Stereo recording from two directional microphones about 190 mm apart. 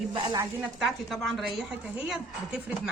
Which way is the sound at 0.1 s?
20° right (ahead or behind).